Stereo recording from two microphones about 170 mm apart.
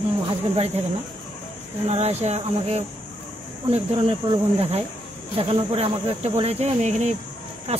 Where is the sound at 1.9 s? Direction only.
40° right (ahead or behind).